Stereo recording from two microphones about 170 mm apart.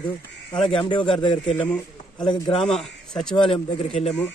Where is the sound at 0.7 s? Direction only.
30° left (ahead or behind).